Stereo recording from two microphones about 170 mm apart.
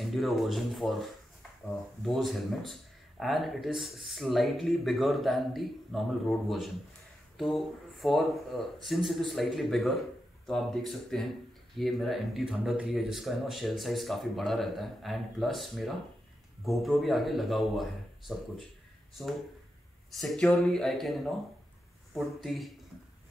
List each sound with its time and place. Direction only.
0.0 s speech: centre (ahead or behind)
20.2 s speech: 5° left (ahead or behind)